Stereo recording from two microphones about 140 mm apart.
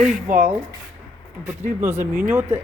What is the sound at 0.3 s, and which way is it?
Speech, 60° right (ahead or behind).